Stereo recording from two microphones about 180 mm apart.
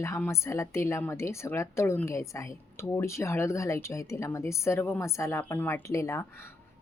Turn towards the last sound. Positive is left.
turn(degrees=15)  # may be behind; listen again after turning